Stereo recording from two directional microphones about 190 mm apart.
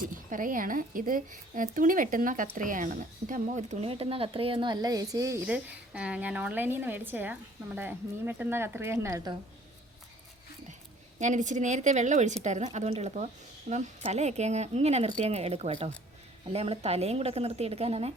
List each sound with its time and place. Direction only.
0.0 s a woman's voice: 45° right (ahead or behind); by 9.3 s 15° right (ahead or behind)
11.2 s a woman's voice: 40° right (ahead or behind)